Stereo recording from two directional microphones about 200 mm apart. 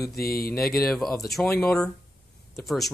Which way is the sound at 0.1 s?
50° left (ahead or behind).